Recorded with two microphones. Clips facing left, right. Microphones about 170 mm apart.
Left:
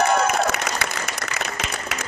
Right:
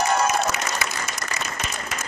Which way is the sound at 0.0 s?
60° left (ahead or behind).